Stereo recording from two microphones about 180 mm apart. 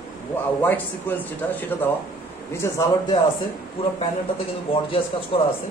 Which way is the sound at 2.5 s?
20° left (ahead or behind).